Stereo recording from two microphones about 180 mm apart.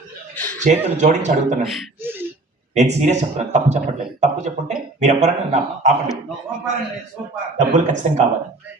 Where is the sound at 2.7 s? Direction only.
40° right (ahead or behind).